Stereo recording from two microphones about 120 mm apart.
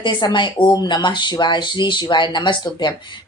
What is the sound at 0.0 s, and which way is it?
A woman's voice, 40° left (ahead or behind).